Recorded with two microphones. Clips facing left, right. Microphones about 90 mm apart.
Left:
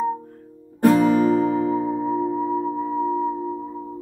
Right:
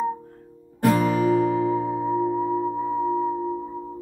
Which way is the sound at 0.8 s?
35° left (ahead or behind).